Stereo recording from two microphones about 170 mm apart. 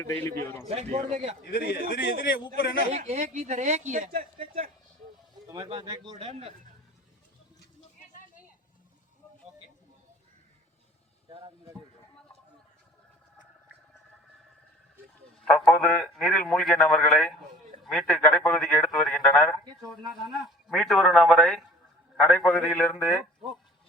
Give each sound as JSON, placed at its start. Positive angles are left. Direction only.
{"t": 0.0, "sound": "a man's voice", "side_deg": 15}
{"t": 0.7, "sound": "speech", "side_deg": -40}
{"t": 1.5, "sound": "a man's voice", "side_deg": 65}
{"t": 2.9, "sound": "a woman's voice", "side_deg": -45}
{"t": 5.5, "sound": "speech", "side_deg": -25}
{"t": 11.3, "sound": "a sound", "side_deg": -35}
{"t": 15.4, "sound": "a man's voice", "side_deg": 5}
{"t": 19.6, "sound": "speech", "side_deg": -25}
{"t": 20.2, "sound": "a man's voice", "side_deg": 0}